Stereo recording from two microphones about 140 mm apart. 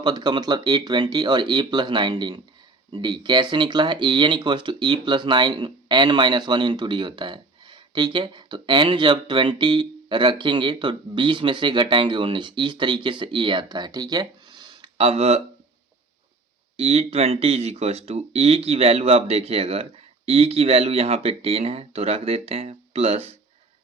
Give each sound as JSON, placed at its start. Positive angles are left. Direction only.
{"t": 0.0, "sound": "speech", "side_deg": -30}
{"t": 16.7, "sound": "speech", "side_deg": -45}